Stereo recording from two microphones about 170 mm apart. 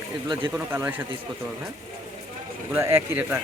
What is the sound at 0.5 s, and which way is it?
Speech, 10° right (ahead or behind).